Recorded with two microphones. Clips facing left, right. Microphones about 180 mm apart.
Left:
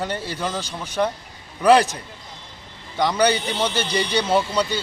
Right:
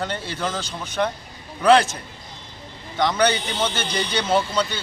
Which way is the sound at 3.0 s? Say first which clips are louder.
Left 1 dB; 10° left (ahead or behind).